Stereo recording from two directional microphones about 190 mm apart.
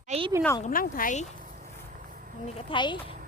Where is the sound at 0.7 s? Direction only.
45° left (ahead or behind).